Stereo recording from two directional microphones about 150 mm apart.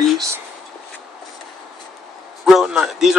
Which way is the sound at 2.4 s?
Centre (ahead or behind).